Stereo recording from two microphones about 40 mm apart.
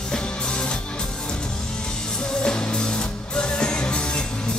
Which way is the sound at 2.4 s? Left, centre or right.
Left.